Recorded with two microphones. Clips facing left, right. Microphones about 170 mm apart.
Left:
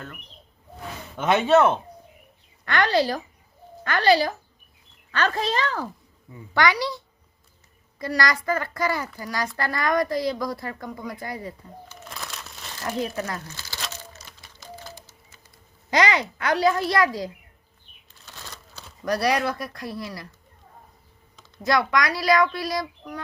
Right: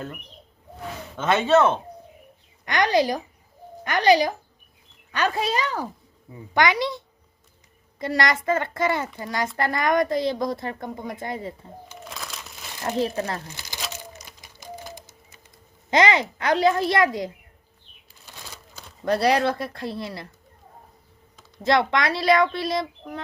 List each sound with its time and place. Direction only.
1.1 s speech: 15° left (ahead or behind)
2.6 s a child's voice: 15° right (ahead or behind)
12.0 s crumpling: centre (ahead or behind)
12.7 s a child's voice: 20° right (ahead or behind)
13.5 s crumpling: 15° right (ahead or behind)
13.8 s typewriter: 15° right (ahead or behind)
15.9 s a child's voice: 25° right (ahead or behind)
18.4 s a sound: 10° right (ahead or behind)
19.0 s a child's voice: 25° right (ahead or behind)
21.6 s a child's voice: 25° right (ahead or behind)